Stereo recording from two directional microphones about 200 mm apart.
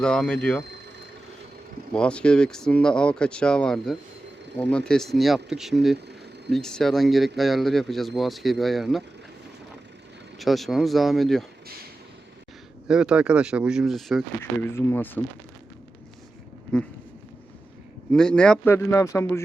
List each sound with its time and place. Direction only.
0.0 s speech: 5° left (ahead or behind)
1.9 s speech: 5° left (ahead or behind)
10.3 s speech: centre (ahead or behind)
12.9 s speech: 5° right (ahead or behind)
14.7 s a man's voice: 10° left (ahead or behind)
18.1 s a man's voice: 5° left (ahead or behind)